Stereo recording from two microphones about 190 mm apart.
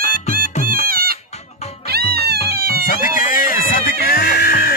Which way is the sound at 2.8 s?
45° left (ahead or behind).